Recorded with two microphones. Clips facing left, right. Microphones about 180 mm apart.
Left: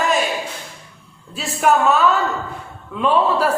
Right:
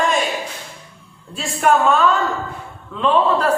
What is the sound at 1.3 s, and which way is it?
A man's voice, centre (ahead or behind).